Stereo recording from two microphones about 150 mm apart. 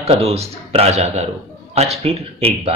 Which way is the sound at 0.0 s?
45° right (ahead or behind).